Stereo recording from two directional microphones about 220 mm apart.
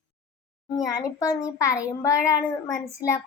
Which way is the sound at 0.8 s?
15° left (ahead or behind).